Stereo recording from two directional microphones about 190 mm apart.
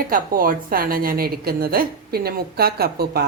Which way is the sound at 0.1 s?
50° right (ahead or behind).